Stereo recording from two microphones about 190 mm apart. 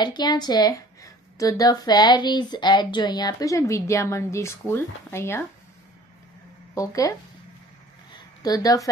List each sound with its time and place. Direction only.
0.0 s a woman's voice: 20° left (ahead or behind)
6.7 s speech: 15° left (ahead or behind)
8.4 s a woman's voice: 20° left (ahead or behind)